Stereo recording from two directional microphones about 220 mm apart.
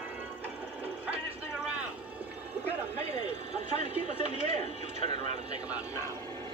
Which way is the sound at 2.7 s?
30° right (ahead or behind).